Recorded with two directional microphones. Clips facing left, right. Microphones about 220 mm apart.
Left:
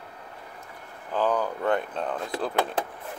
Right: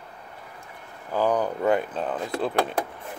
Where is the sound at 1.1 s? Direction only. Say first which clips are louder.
Right 2 dB; 15° right (ahead or behind).